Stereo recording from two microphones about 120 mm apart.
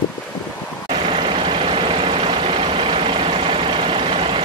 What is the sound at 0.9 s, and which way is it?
Vehicle, 50° right (ahead or behind).